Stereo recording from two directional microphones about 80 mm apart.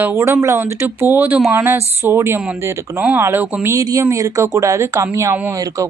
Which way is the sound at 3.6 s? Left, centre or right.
Right.